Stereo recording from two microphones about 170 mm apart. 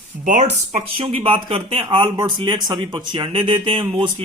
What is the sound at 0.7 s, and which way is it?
Speech, 35° right (ahead or behind).